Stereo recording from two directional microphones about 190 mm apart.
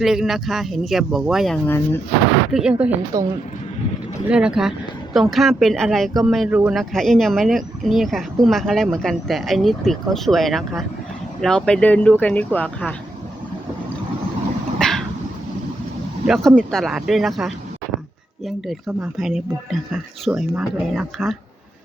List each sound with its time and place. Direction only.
0.0 s speech: centre (ahead or behind)
3.1 s speech: 20° right (ahead or behind)
4.3 s speech: 5° right (ahead or behind)
6.5 s speech: 10° right (ahead or behind)
6.7 s speech: centre (ahead or behind)
14.8 s vehicle: 5° left (ahead or behind)
16.2 s speech: centre (ahead or behind)
19.1 s speech: centre (ahead or behind)